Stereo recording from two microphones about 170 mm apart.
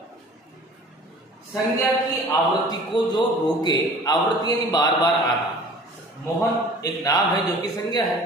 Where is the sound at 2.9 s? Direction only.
25° left (ahead or behind).